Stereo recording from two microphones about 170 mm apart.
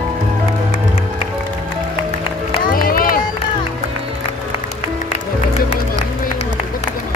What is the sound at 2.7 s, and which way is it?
Run, 55° left (ahead or behind).